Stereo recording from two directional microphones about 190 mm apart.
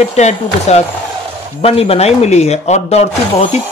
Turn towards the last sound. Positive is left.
turn(degrees=35)  # may be behind; listen again after turning